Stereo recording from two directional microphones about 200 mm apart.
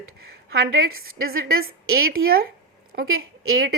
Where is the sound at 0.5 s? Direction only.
90° right.